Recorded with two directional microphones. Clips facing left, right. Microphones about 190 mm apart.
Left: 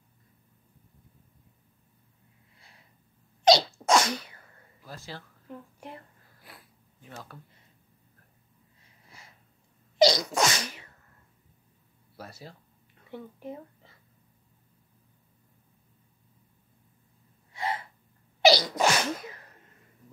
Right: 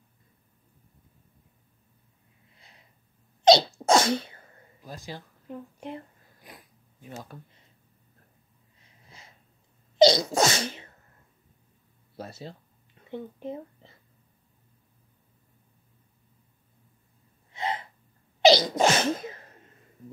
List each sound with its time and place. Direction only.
3.4 s sneeze: 25° right (ahead or behind)
9.9 s sneeze: 25° right (ahead or behind)
12.2 s speech: 25° right (ahead or behind)
17.5 s gasp: 20° right (ahead or behind)
18.4 s sneeze: 20° right (ahead or behind)